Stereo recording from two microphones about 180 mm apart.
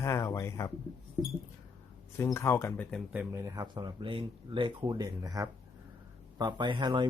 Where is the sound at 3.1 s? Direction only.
20° right (ahead or behind).